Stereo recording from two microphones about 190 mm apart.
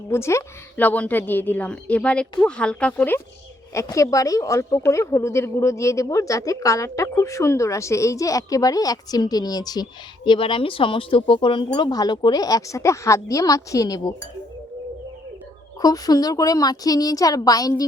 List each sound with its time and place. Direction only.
0.1 s a woman's voice: 15° left (ahead or behind)
15.8 s speech: 20° left (ahead or behind)